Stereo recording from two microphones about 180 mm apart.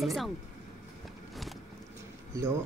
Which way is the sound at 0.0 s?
Centre (ahead or behind).